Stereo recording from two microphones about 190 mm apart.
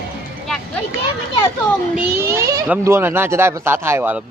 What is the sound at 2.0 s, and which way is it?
Speech, 10° right (ahead or behind).